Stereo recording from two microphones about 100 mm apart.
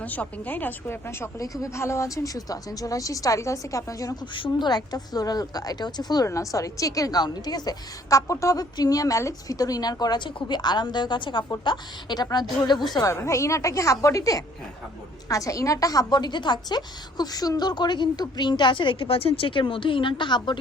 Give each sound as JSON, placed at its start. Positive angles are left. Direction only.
{"t": 0.0, "sound": "a woman's voice", "side_deg": 15}
{"t": 1.4, "sound": "a woman's voice", "side_deg": 35}
{"t": 4.4, "sound": "a woman's voice", "side_deg": 55}
{"t": 12.9, "sound": "a woman's voice", "side_deg": 35}